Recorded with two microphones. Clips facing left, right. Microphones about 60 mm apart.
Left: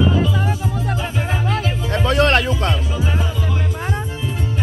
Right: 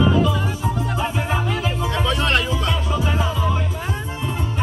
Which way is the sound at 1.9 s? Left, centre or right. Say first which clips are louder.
Left 6 dB; left.